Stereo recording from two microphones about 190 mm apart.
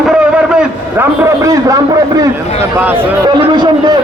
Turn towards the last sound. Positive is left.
turn(degrees=-25)  # may be behind; listen again after turning